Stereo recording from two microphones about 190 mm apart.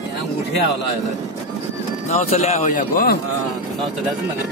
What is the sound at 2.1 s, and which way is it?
A man's voice, 35° left (ahead or behind).